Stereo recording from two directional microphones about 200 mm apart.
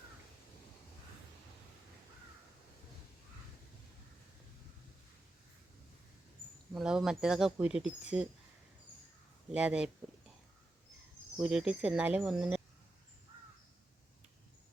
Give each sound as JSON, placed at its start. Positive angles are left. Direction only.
{"t": 6.7, "sound": "speech", "side_deg": -5}
{"t": 9.5, "sound": "speech", "side_deg": -5}
{"t": 11.3, "sound": "speech", "side_deg": -5}